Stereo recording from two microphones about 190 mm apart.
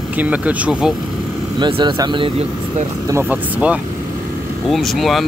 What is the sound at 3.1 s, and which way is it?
Speech, 10° right (ahead or behind).